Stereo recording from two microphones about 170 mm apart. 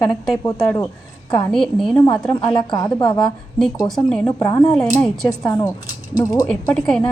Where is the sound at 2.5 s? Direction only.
25° left (ahead or behind).